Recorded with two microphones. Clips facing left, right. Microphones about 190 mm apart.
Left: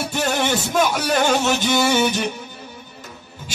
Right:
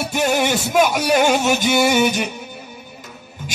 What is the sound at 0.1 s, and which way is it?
Music, 10° right (ahead or behind).